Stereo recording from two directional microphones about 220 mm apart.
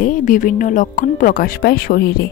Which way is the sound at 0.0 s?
35° left (ahead or behind).